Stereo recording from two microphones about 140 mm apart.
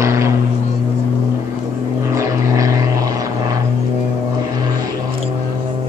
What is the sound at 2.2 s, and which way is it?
Vehicle, 25° right (ahead or behind).